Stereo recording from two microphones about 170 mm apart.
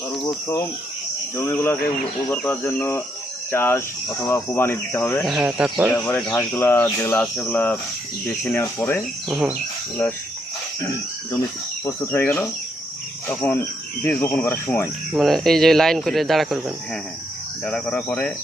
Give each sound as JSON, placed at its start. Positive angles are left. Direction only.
{"t": 0.3, "sound": "speech", "side_deg": 15}
{"t": 5.2, "sound": "speech", "side_deg": -5}
{"t": 5.9, "sound": "speech", "side_deg": 10}
{"t": 10.0, "sound": "speech", "side_deg": 5}
{"t": 10.8, "sound": "speech", "side_deg": 20}
{"t": 15.1, "sound": "speech", "side_deg": 0}